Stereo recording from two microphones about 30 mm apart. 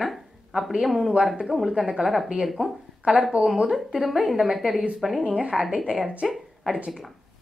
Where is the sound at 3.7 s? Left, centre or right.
Centre.